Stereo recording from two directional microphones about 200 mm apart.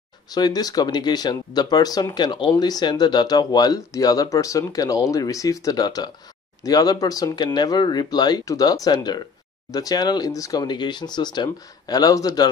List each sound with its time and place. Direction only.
0.3 s speech: 20° left (ahead or behind)